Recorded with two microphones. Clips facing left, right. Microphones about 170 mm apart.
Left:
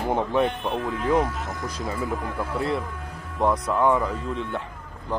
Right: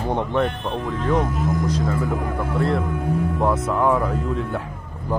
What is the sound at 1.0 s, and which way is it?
Speech, 10° left (ahead or behind).